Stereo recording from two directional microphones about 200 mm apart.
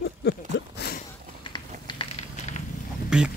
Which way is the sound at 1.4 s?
25° left (ahead or behind).